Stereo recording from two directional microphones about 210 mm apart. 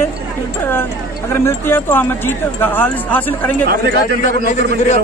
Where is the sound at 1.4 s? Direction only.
10° left (ahead or behind).